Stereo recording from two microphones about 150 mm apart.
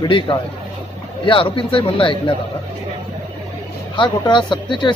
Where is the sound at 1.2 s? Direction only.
35° left (ahead or behind).